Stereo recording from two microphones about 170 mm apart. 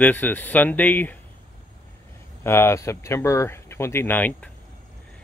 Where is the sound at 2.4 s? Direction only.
15° left (ahead or behind).